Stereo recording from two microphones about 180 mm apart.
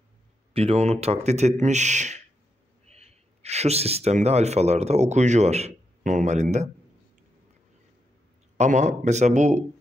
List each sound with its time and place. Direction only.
0.5 s speech: 35° right (ahead or behind)
8.5 s speech: 40° right (ahead or behind)